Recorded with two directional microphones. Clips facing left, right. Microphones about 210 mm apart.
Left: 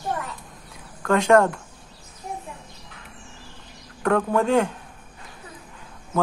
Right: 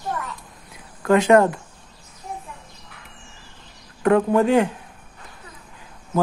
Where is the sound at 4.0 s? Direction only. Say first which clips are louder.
Right 4 dB; 15° right (ahead or behind).